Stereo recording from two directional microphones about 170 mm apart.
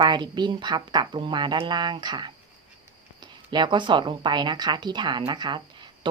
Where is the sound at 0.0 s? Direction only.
25° right (ahead or behind).